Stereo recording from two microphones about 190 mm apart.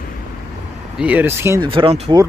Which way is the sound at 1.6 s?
30° right (ahead or behind).